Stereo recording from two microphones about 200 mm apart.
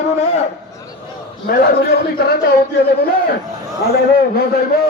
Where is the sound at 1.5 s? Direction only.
50° left (ahead or behind).